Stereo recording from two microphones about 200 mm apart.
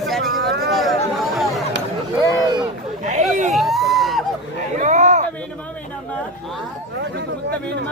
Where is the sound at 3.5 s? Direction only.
Centre (ahead or behind).